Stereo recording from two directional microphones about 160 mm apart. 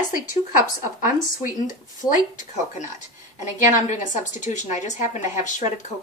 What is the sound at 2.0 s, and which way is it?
A woman's voice, 50° left (ahead or behind).